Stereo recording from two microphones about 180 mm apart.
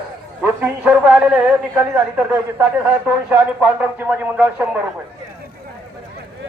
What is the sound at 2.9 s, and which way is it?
Speech, 10° right (ahead or behind).